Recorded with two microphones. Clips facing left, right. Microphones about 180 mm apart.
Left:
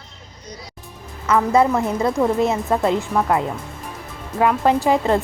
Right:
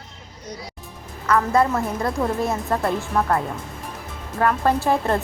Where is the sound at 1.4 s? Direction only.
10° left (ahead or behind).